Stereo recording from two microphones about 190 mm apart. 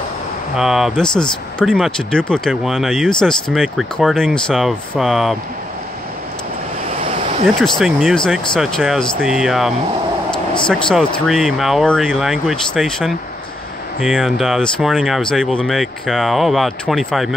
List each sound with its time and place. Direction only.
0.6 s speech: 5° right (ahead or behind)
7.1 s a sound: 35° right (ahead or behind)
7.4 s speech: centre (ahead or behind)